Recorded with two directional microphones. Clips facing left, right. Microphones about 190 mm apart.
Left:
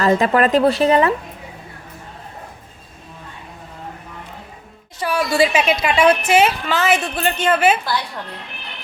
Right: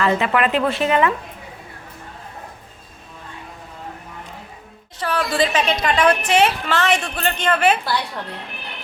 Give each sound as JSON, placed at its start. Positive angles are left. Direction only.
{"t": 0.0, "sound": "speech", "side_deg": 40}
{"t": 4.9, "sound": "a woman's voice", "side_deg": 10}